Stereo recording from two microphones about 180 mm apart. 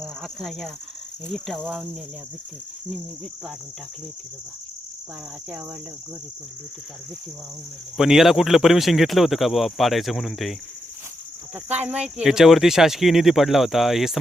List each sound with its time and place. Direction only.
0.0 s speech: centre (ahead or behind)
7.9 s speech: centre (ahead or behind)
11.5 s speech: 10° right (ahead or behind)